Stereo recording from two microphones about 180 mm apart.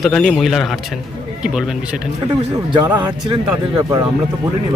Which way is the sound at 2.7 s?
25° right (ahead or behind).